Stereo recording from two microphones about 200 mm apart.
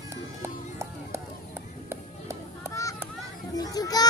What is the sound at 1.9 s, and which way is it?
Music, 15° right (ahead or behind).